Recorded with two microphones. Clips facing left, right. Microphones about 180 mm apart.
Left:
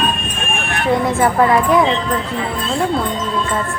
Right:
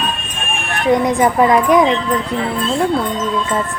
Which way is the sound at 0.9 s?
15° right (ahead or behind).